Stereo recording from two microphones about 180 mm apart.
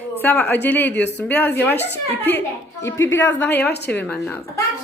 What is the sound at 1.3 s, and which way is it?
Speech, 10° left (ahead or behind).